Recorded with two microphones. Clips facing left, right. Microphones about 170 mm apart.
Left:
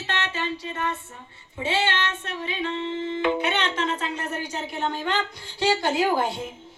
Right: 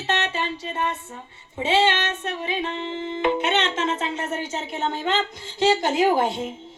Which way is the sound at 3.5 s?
25° right (ahead or behind).